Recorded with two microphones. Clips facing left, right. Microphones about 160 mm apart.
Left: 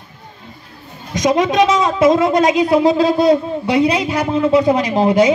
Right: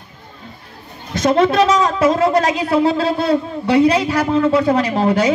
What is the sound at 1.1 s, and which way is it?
Speech, 15° left (ahead or behind).